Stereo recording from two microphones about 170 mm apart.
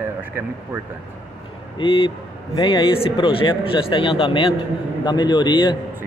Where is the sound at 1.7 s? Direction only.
30° left (ahead or behind).